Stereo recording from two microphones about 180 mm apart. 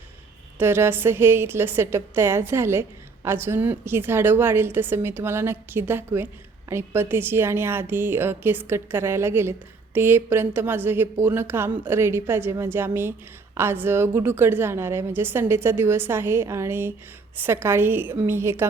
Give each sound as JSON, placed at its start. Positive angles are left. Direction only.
{"t": 0.6, "sound": "a woman's voice", "side_deg": -15}